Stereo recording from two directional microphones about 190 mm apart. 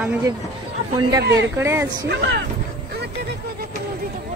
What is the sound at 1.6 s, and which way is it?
Speech, 15° right (ahead or behind).